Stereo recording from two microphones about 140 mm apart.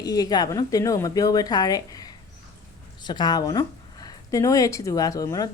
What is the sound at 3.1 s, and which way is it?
A woman's voice, 30° left (ahead or behind).